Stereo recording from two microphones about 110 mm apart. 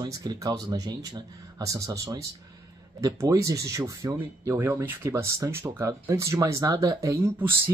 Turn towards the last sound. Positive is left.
turn(degrees=-20)  # may be behind; listen again after turning